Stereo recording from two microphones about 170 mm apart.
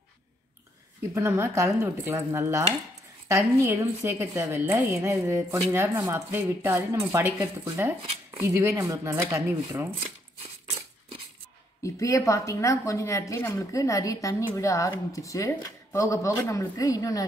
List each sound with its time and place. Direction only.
1.1 s a woman's voice: 15° right (ahead or behind)
11.8 s a woman's voice: 20° left (ahead or behind)